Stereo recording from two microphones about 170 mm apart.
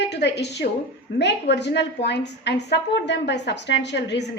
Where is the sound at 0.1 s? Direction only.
80° left.